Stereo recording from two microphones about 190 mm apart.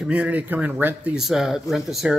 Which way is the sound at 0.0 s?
5° right (ahead or behind).